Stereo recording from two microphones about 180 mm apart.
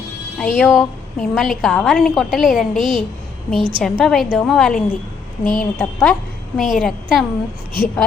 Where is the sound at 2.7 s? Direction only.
30° right (ahead or behind).